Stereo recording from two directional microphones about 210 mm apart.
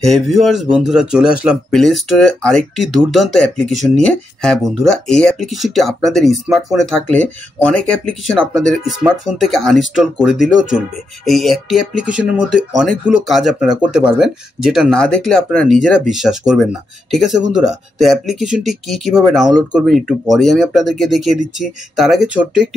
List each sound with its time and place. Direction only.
0.0 s speech: centre (ahead or behind)